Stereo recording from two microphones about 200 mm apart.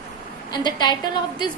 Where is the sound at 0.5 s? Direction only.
20° left (ahead or behind).